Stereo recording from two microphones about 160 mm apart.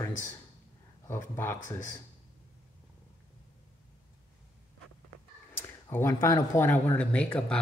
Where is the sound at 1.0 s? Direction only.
15° left (ahead or behind).